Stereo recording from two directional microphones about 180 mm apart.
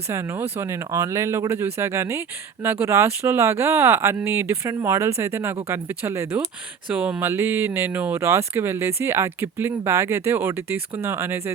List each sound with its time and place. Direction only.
0.1 s speech: 15° right (ahead or behind)